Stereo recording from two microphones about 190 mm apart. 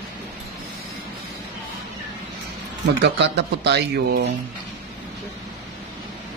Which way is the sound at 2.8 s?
65° right (ahead or behind).